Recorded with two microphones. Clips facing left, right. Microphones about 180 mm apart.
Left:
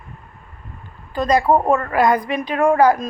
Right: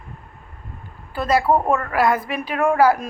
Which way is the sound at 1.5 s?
15° left (ahead or behind).